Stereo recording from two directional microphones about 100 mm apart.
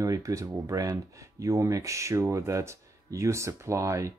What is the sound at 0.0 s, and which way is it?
Speech, 35° right (ahead or behind).